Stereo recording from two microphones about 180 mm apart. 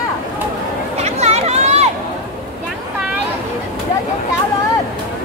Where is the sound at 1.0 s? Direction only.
40° right (ahead or behind).